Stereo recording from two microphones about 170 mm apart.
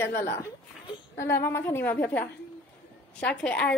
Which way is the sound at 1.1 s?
15° left (ahead or behind).